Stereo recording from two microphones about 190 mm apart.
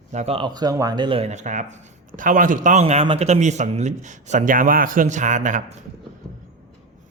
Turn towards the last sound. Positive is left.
turn(degrees=-40)  # may be behind; listen again after turning